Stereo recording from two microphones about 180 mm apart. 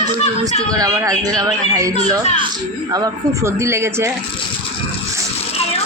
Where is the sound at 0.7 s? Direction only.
20° right (ahead or behind).